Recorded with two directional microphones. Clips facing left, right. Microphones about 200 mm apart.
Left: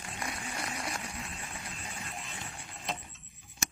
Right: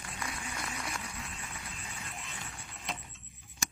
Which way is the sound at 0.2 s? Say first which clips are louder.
Left 2 dB; 35° left (ahead or behind).